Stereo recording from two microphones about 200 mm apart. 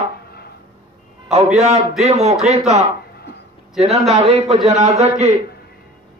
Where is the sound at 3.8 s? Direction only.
30° right (ahead or behind).